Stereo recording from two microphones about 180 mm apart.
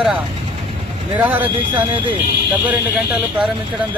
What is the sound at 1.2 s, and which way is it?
Speech, 10° right (ahead or behind).